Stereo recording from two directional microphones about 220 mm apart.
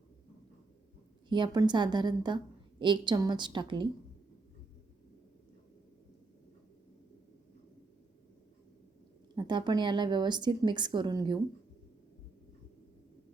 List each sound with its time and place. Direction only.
1.3 s a woman's voice: 20° right (ahead or behind)
9.3 s a woman's voice: 20° right (ahead or behind)